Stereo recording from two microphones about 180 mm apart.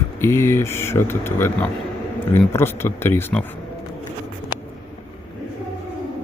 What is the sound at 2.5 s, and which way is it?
Speech, 15° left (ahead or behind).